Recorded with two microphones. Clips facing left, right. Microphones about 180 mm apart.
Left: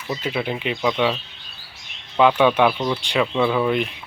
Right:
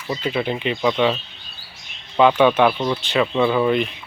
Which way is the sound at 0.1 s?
5° left (ahead or behind).